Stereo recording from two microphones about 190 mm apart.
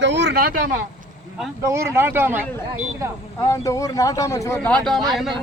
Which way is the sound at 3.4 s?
15° left (ahead or behind).